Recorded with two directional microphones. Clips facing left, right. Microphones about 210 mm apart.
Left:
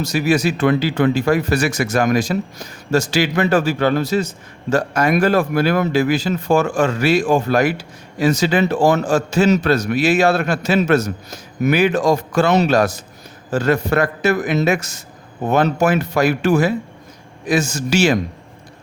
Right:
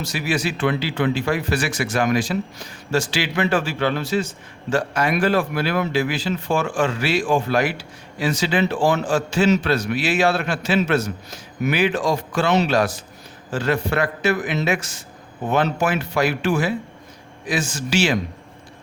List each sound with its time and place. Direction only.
0.0 s speech: 40° left (ahead or behind)